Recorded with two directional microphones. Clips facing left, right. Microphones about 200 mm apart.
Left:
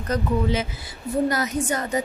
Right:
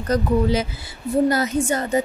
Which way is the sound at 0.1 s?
35° right (ahead or behind).